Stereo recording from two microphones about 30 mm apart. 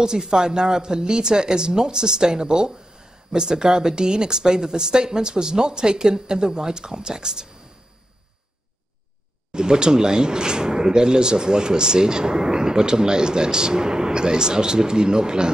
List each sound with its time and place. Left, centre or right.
0.0 s speech: right
9.5 s speech: right